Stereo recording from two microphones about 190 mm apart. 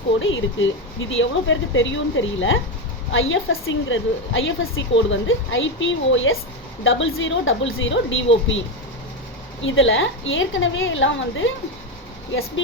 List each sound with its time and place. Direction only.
0.2 s a woman's voice: 90° left